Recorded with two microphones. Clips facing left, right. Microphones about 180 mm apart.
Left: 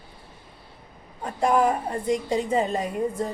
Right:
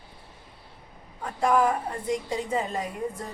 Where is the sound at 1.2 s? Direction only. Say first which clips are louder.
Left 2 dB; 20° left (ahead or behind).